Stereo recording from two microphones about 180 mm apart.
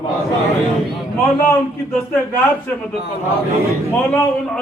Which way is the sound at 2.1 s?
10° left (ahead or behind).